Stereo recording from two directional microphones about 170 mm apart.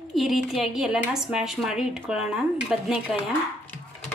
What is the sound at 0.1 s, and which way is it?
A woman's voice, centre (ahead or behind).